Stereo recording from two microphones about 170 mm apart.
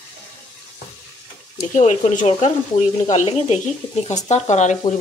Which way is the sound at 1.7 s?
45° left (ahead or behind).